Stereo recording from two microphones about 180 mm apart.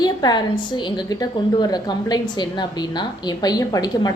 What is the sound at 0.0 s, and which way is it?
A woman's voice, 25° left (ahead or behind).